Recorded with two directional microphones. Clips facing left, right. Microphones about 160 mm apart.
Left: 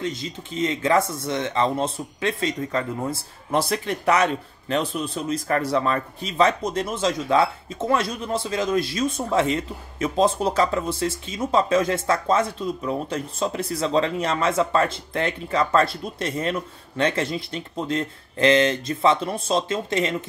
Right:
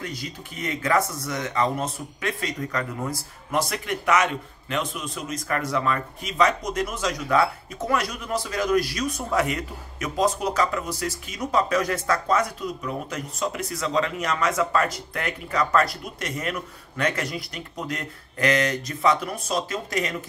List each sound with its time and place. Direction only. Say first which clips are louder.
0.0 s a man's voice: left 5 dB; 25° left (ahead or behind)